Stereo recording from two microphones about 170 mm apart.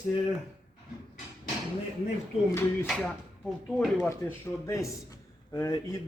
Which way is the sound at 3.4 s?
Centre (ahead or behind).